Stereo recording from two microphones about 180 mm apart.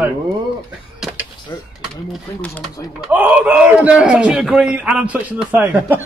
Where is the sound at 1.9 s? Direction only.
5° left (ahead or behind).